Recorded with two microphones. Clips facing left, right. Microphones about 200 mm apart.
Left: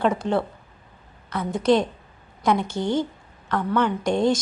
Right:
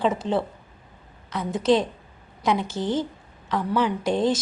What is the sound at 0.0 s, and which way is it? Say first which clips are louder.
A woman's voice: left 1 dB; centre (ahead or behind).